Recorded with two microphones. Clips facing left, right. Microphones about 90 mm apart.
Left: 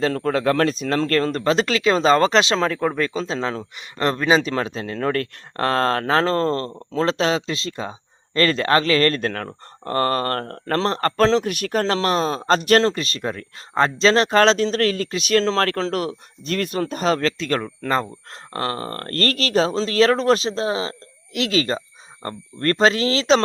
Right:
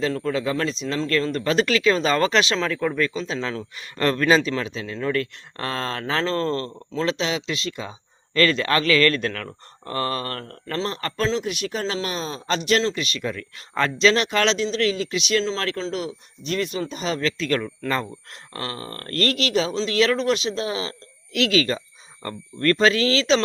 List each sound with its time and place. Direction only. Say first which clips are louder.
0.0 s speech: left 4 dB; 50° left (ahead or behind)
1.3 s speech: left 1 dB; 30° left (ahead or behind)
4.5 s speech: left 3 dB; 45° left (ahead or behind)
17.3 s speech: even; 30° left (ahead or behind)
18.5 s speech: left 6 dB; 40° left (ahead or behind)